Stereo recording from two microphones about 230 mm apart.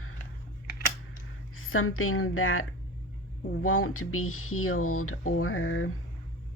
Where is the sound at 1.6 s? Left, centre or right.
Left.